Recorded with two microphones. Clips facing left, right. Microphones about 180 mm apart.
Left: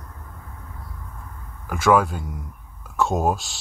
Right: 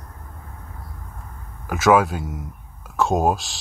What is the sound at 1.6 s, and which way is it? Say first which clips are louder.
Speech: right 2 dB; 5° right (ahead or behind).